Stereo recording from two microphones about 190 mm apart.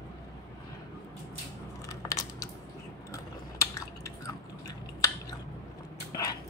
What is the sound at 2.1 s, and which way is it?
Biting, 15° left (ahead or behind).